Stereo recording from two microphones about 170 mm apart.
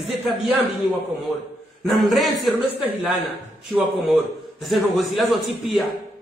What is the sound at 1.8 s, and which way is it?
Speech, centre (ahead or behind).